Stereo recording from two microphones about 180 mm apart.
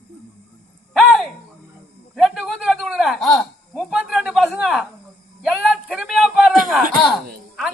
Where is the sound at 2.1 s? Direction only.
Centre (ahead or behind).